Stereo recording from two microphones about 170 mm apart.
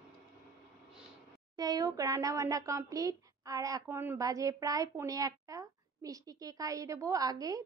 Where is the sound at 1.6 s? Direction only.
20° right (ahead or behind).